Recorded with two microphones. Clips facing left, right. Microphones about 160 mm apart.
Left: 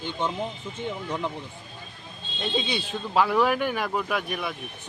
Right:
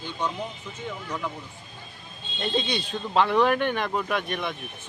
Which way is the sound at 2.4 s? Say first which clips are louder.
Right 1 dB; 5° left (ahead or behind).